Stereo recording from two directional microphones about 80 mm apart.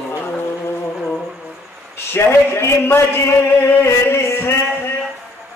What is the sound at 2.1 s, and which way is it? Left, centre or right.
A man's voice, left.